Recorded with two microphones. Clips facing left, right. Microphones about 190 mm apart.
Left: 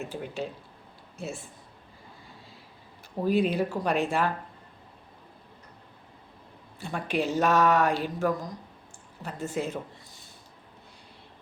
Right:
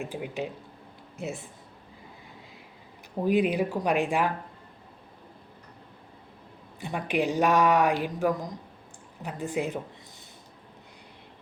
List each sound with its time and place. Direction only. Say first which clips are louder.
0.0 s speech: right 1 dB; 15° right (ahead or behind)
3.2 s speech: right 1 dB; 15° right (ahead or behind)
6.7 s speech: right 1 dB; 15° right (ahead or behind)